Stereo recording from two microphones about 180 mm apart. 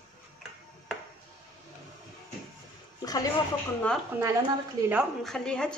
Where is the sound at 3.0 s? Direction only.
20° left (ahead or behind).